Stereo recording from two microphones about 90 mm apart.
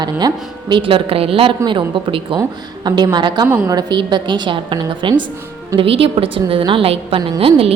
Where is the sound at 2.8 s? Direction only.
55° right (ahead or behind).